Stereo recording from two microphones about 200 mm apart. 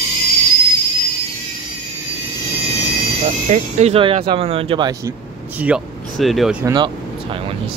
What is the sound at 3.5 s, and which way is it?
Speech, 35° right (ahead or behind).